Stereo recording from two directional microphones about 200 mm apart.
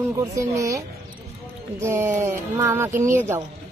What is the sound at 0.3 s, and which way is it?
Speech, 15° right (ahead or behind).